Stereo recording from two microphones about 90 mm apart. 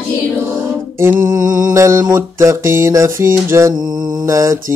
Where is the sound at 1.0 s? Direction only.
30° right (ahead or behind).